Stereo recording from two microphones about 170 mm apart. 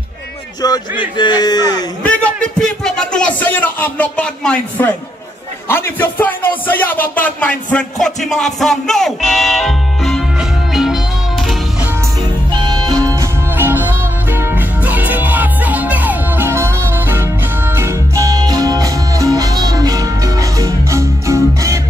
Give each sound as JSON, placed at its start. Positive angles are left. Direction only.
{"t": 0.6, "sound": "speech", "side_deg": 25}
{"t": 2.0, "sound": "speech", "side_deg": 5}
{"t": 10.7, "sound": "music", "side_deg": 0}
{"t": 12.5, "sound": "music", "side_deg": -25}